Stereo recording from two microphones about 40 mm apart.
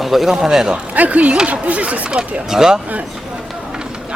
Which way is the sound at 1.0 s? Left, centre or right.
Right.